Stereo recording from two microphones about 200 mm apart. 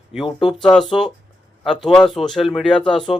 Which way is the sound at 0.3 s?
25° left (ahead or behind).